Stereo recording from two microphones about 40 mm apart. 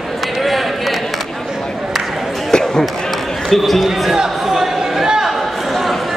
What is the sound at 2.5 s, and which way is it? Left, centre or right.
Basketball bounce, centre.